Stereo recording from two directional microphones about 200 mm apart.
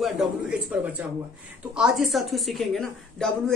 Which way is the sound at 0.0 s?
5° right (ahead or behind).